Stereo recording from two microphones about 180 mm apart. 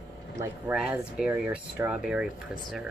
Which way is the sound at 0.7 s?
5° right (ahead or behind).